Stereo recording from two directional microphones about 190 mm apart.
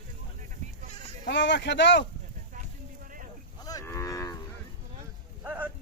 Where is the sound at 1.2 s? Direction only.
70° left (ahead or behind).